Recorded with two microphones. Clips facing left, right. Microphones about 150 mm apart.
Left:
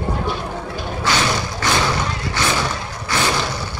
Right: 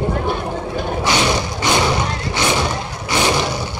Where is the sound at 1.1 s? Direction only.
20° right (ahead or behind).